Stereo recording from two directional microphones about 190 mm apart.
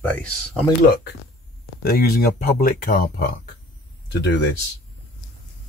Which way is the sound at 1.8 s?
55° left (ahead or behind).